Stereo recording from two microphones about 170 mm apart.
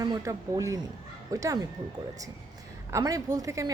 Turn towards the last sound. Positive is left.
turn(degrees=-20)  # may be behind; listen again after turning